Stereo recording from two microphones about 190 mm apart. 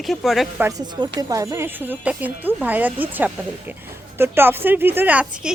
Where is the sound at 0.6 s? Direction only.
20° right (ahead or behind).